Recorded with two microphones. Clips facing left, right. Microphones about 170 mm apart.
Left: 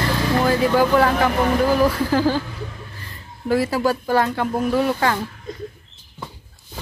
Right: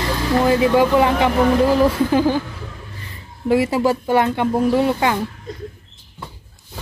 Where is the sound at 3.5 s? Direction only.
25° right (ahead or behind).